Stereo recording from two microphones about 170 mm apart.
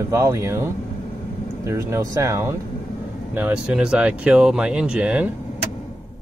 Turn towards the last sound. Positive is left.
turn(degrees=-5)  # may be behind; listen again after turning